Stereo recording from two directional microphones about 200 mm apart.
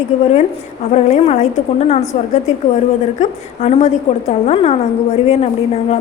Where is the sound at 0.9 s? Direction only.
35° left (ahead or behind).